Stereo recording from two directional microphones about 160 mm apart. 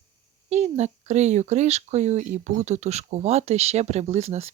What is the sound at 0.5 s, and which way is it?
Speech, 45° right (ahead or behind).